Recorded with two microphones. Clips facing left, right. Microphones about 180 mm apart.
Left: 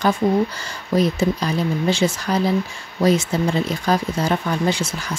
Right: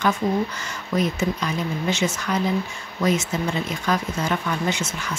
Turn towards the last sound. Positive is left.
turn(degrees=35)  # may be behind; listen again after turning